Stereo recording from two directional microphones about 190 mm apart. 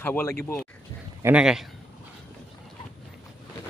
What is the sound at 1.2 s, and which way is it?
Speech, 5° right (ahead or behind).